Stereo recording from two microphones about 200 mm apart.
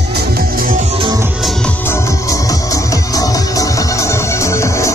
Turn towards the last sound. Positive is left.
turn(degrees=15)  # may be behind; listen again after turning